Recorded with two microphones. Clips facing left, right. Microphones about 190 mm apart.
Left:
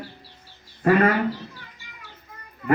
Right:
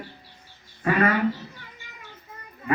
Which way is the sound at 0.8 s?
45° left (ahead or behind).